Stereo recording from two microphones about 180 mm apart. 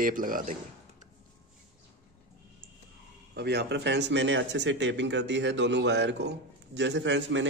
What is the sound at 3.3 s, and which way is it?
Speech, 65° right (ahead or behind).